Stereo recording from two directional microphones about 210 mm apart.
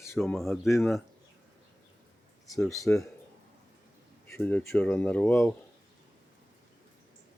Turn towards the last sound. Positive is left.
turn(degrees=5)  # may be behind; listen again after turning